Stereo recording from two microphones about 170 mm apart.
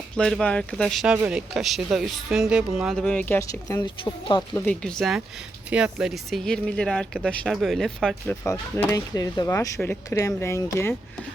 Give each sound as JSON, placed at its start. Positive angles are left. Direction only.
{"t": 0.2, "sound": "speech", "side_deg": 5}
{"t": 4.5, "sound": "speech", "side_deg": 5}
{"t": 8.4, "sound": "speech", "side_deg": 15}